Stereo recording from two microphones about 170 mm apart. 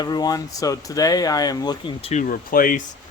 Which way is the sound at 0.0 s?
25° left (ahead or behind).